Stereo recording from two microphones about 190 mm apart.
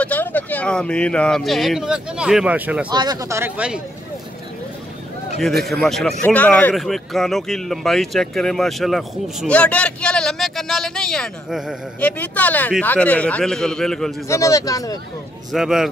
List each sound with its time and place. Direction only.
0.0 s speech: 10° left (ahead or behind); by 2.9 s 5° right (ahead or behind)
2.9 s speech: 20° right (ahead or behind)
5.7 s speech: centre (ahead or behind)
14.2 s speech: 15° left (ahead or behind)
15.5 s speech: centre (ahead or behind)